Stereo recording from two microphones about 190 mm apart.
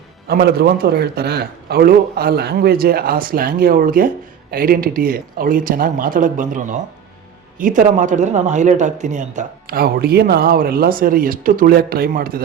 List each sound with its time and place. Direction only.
0.3 s speech: 55° right (ahead or behind)